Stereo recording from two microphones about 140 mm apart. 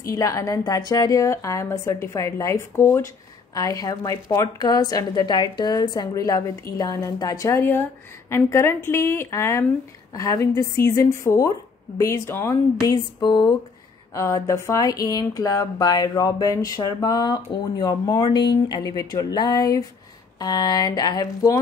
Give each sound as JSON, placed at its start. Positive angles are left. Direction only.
{"t": 0.0, "sound": "speech", "side_deg": 25}
{"t": 12.8, "sound": "music", "side_deg": 30}
{"t": 14.1, "sound": "speech", "side_deg": 20}